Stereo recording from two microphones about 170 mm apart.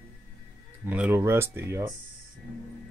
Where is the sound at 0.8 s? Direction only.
10° right (ahead or behind).